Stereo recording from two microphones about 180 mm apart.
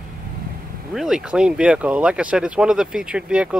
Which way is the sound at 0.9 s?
Centre (ahead or behind).